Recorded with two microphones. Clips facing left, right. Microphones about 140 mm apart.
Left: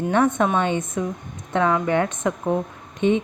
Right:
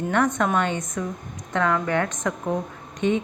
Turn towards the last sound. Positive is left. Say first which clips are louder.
# left 3 dB
turn(degrees=20)  # may be behind; listen again after turning